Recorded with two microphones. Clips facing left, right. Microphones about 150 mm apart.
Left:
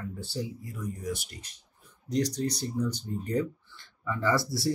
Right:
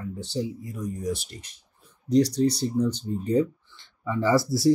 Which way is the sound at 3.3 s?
20° right (ahead or behind).